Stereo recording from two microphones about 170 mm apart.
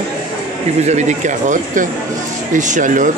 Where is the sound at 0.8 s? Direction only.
45° right (ahead or behind).